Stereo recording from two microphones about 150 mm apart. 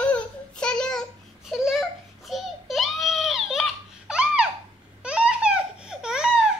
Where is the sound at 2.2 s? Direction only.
Centre (ahead or behind).